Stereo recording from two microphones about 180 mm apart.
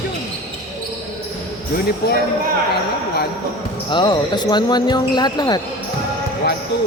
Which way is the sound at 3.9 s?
25° left (ahead or behind).